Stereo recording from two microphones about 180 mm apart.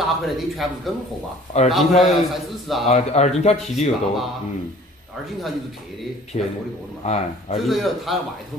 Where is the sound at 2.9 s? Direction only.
40° left (ahead or behind).